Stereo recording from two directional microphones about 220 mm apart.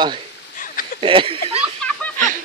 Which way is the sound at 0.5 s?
40° left (ahead or behind).